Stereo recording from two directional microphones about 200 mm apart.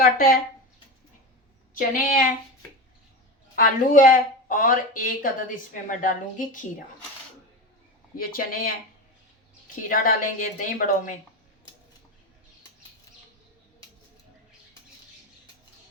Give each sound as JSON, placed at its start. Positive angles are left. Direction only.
{"t": 0.0, "sound": "speech", "side_deg": 45}
{"t": 1.7, "sound": "speech", "side_deg": 45}
{"t": 3.5, "sound": "speech", "side_deg": 45}
{"t": 8.1, "sound": "speech", "side_deg": 45}
{"t": 9.9, "sound": "speech", "side_deg": 45}